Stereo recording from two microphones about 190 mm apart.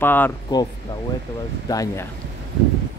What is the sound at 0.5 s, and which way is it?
Speech, 20° left (ahead or behind).